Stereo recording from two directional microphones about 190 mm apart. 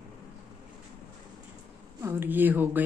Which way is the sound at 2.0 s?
10° right (ahead or behind).